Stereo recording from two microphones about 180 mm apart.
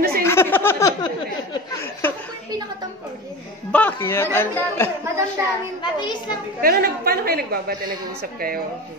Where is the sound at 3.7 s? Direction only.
10° left (ahead or behind).